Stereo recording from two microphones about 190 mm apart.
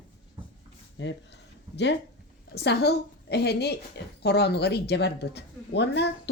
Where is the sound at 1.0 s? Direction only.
70° left (ahead or behind).